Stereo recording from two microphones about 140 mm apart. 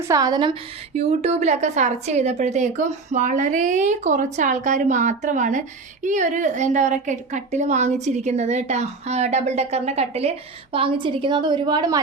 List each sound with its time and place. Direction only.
0.0 s a woman's voice: 25° right (ahead or behind)
0.9 s a woman's voice: 50° right (ahead or behind); by 11.9 s 30° right (ahead or behind)